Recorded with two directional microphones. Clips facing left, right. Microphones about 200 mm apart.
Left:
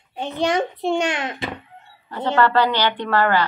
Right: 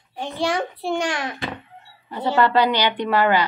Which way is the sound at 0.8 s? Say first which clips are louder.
Left 2 dB; 20° left (ahead or behind).